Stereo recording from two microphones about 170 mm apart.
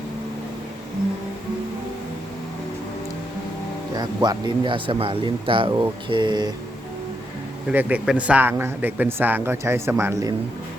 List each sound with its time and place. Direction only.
3.9 s speech: 25° right (ahead or behind)
7.7 s a man's voice: 10° right (ahead or behind)